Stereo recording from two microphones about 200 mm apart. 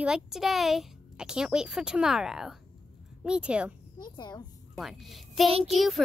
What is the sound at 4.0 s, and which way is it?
Speech, 20° left (ahead or behind).